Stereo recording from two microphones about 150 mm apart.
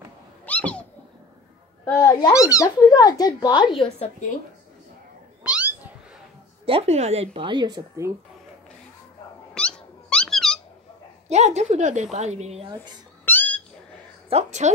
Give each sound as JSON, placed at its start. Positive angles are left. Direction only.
{"t": 0.5, "sound": "cat", "side_deg": 10}
{"t": 1.9, "sound": "a child's voice", "side_deg": 20}
{"t": 5.4, "sound": "cat", "side_deg": -10}
{"t": 6.6, "sound": "speech", "side_deg": -40}
{"t": 9.5, "sound": "cat", "side_deg": 5}
{"t": 11.2, "sound": "a woman's voice", "side_deg": -50}
{"t": 13.2, "sound": "cat", "side_deg": 10}
{"t": 14.3, "sound": "a woman's voice", "side_deg": -50}